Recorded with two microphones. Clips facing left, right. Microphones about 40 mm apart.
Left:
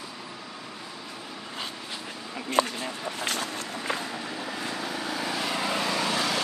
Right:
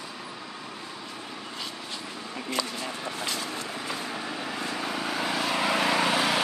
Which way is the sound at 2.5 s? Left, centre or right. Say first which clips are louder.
Left 6 dB; left.